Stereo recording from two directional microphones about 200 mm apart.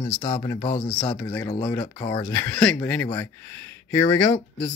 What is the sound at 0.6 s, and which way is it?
Speech, 30° left (ahead or behind).